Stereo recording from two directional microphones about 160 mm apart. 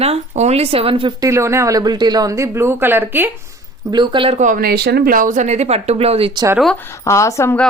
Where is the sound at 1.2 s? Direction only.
20° right (ahead or behind).